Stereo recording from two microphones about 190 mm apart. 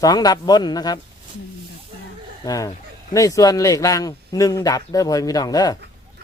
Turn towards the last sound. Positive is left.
turn(degrees=20)  # may be behind; listen again after turning